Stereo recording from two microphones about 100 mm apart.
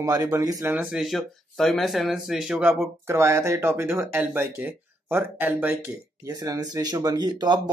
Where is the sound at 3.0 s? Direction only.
25° right (ahead or behind).